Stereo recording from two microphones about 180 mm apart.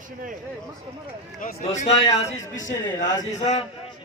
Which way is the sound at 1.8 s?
35° left (ahead or behind).